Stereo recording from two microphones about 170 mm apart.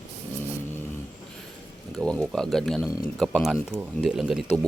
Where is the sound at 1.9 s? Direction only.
5° left (ahead or behind).